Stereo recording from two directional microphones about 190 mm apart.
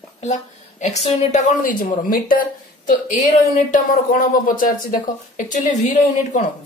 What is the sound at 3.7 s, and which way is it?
Speech, 45° left (ahead or behind).